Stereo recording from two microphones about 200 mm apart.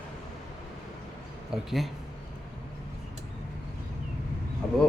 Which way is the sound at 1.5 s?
Centre (ahead or behind).